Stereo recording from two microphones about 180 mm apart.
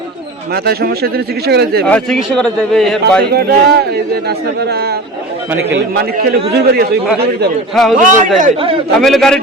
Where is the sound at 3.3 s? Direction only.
60° right (ahead or behind).